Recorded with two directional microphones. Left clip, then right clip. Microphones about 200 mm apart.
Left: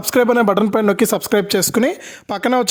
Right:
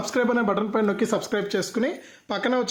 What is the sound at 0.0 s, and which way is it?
Speech, 50° left (ahead or behind).